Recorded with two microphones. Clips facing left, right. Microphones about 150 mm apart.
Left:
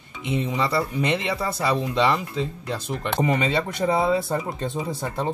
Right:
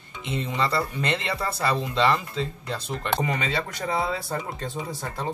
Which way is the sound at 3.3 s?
25° left (ahead or behind).